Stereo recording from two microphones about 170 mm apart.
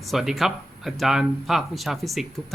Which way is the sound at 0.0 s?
Centre (ahead or behind).